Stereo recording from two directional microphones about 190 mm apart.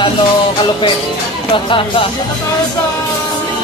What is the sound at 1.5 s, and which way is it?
Music, 25° left (ahead or behind).